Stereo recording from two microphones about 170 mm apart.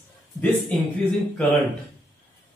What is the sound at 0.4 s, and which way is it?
Speech, 10° left (ahead or behind).